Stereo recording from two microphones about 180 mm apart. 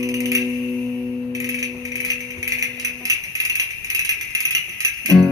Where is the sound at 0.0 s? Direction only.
20° right (ahead or behind).